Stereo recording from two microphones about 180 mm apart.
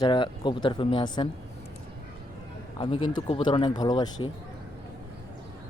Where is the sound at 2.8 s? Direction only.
25° left (ahead or behind).